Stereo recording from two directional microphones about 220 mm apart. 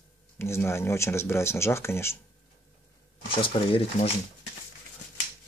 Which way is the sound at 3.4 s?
25° left (ahead or behind).